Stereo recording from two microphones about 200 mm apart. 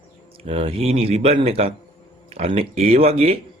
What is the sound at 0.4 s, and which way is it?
A man's voice, 30° right (ahead or behind).